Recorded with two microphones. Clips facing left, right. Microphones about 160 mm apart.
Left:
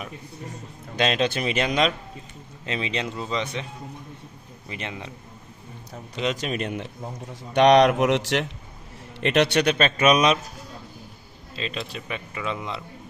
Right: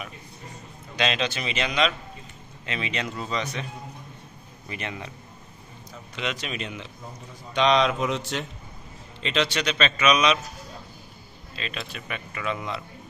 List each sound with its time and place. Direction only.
0.9 s a man's voice: 45° left (ahead or behind)
2.6 s speech: 35° left (ahead or behind)
4.6 s speech: 25° left (ahead or behind)
6.1 s a man's voice: 40° left (ahead or behind)
7.5 s speech: 65° left (ahead or behind); by 8.5 s 90° left
9.2 s a man's voice: 60° left (ahead or behind); by 10.4 s 45° left (ahead or behind)
11.5 s speech: 30° left (ahead or behind)